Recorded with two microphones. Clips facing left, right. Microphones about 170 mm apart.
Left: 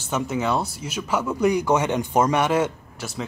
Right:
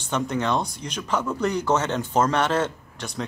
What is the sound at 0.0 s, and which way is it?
Speech, 5° left (ahead or behind).